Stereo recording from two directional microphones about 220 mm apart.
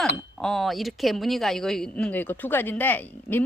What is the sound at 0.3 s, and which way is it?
A woman's voice, centre (ahead or behind).